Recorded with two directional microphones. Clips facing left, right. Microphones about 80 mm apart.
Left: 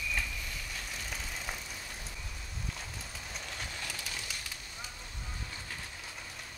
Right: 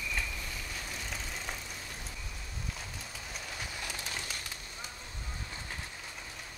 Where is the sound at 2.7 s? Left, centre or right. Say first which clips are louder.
Even; centre.